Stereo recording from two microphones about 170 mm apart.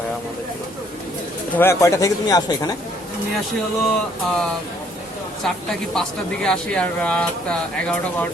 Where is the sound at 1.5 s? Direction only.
15° left (ahead or behind).